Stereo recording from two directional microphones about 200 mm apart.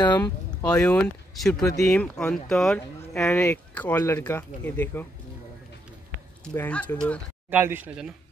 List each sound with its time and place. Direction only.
0.0 s speech: 20° left (ahead or behind)
0.7 s speech: 5° left (ahead or behind)
6.4 s speech: 10° left (ahead or behind)
7.4 s speech: 10° right (ahead or behind)